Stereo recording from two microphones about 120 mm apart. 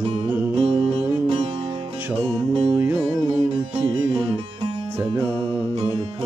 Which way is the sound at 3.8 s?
45° right (ahead or behind).